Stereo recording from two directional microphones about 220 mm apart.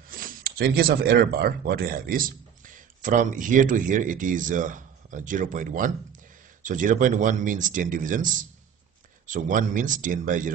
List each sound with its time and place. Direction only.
0.1 s speech: 40° right (ahead or behind)